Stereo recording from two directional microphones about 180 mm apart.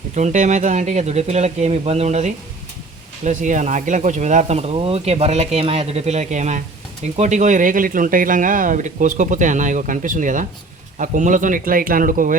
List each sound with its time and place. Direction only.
0.2 s speech: 40° right (ahead or behind)